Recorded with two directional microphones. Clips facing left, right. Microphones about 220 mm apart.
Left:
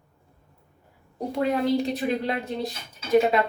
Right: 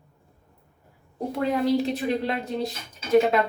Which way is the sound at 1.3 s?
Centre (ahead or behind).